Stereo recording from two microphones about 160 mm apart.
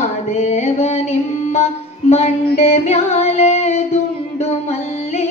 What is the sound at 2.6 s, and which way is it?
Music, 45° left (ahead or behind).